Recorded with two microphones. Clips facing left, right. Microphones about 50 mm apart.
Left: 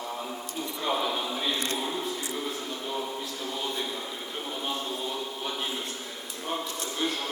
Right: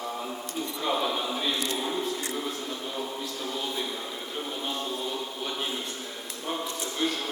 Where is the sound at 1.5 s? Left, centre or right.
Left.